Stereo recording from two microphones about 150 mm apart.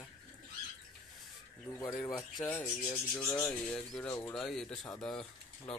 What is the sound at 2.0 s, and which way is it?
Speech, 20° left (ahead or behind).